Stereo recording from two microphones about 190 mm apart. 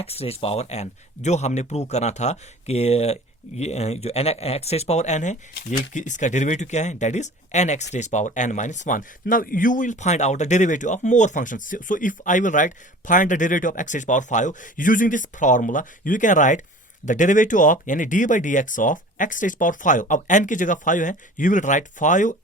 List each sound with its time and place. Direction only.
0.0 s speech: 30° left (ahead or behind)